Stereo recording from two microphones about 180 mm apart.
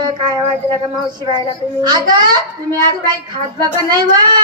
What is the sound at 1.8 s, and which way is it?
Child singing, 25° right (ahead or behind).